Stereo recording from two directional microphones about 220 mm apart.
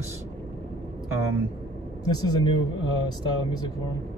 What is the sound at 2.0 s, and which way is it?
Speech, 20° left (ahead or behind).